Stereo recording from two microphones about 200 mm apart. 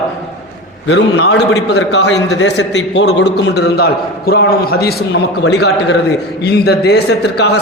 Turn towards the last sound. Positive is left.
turn(degrees=55)  # may be behind; listen again after turning